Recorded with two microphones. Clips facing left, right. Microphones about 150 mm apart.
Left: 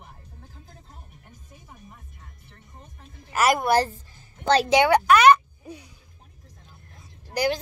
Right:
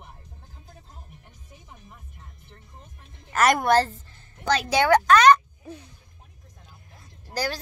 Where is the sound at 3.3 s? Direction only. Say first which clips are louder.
Right 1 dB; 5° left (ahead or behind).